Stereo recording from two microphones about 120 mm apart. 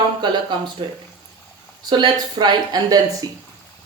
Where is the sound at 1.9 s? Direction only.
40° right (ahead or behind).